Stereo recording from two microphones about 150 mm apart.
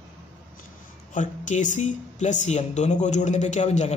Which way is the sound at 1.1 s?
55° left (ahead or behind).